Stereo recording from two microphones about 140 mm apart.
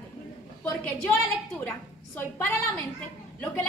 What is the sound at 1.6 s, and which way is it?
A woman's voice, 15° left (ahead or behind).